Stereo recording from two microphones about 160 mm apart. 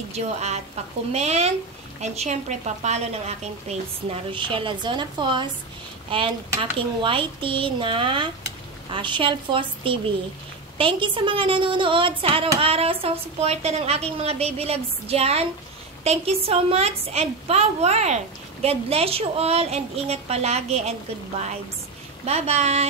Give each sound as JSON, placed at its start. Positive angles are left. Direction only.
{"t": 0.1, "sound": "a woman's voice", "side_deg": -45}
{"t": 22.2, "sound": "a woman's voice", "side_deg": -40}